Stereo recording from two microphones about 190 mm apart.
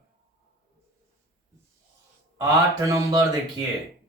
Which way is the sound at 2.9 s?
20° right (ahead or behind).